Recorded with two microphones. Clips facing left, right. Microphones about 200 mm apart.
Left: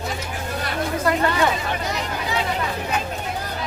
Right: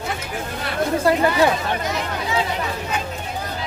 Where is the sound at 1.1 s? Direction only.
30° right (ahead or behind).